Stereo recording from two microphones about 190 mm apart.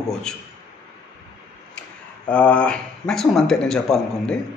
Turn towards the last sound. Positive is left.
turn(degrees=5)  # may be behind; listen again after turning